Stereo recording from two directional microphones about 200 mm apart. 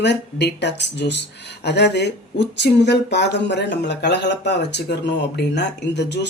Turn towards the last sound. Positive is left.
turn(degrees=60)  # may be behind; listen again after turning